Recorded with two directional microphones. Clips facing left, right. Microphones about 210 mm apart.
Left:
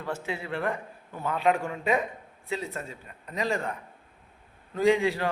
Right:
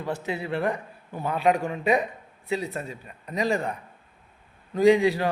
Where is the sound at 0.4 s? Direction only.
15° right (ahead or behind).